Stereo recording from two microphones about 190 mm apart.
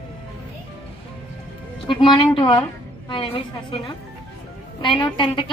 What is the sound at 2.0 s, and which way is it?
A woman's voice, 25° left (ahead or behind).